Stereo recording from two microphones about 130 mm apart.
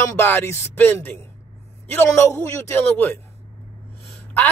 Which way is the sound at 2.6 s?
15° left (ahead or behind).